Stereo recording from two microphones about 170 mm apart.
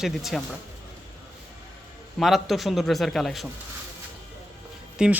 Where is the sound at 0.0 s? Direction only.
Centre (ahead or behind).